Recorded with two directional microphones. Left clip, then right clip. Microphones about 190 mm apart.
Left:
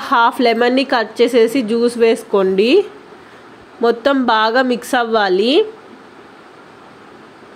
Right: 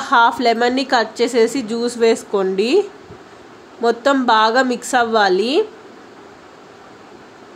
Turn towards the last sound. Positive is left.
turn(degrees=15)  # may be behind; listen again after turning